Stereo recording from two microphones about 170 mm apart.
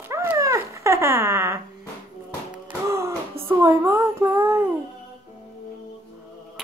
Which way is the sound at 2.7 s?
15° right (ahead or behind).